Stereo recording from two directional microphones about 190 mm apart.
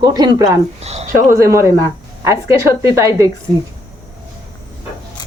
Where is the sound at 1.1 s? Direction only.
15° right (ahead or behind).